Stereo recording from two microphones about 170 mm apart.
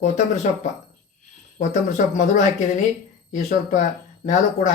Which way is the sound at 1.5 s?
45° left (ahead or behind).